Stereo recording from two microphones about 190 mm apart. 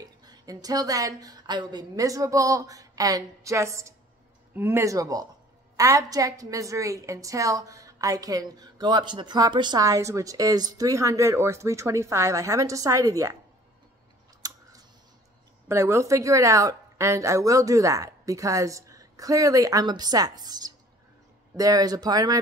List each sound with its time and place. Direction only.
0.0 s a woman's voice: 20° right (ahead or behind)
15.7 s a woman's voice: 15° right (ahead or behind)